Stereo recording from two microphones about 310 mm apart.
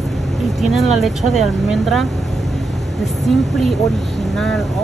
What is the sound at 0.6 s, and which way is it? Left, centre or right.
Speech, centre.